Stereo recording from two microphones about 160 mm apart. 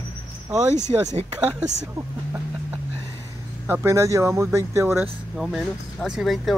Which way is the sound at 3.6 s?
15° right (ahead or behind).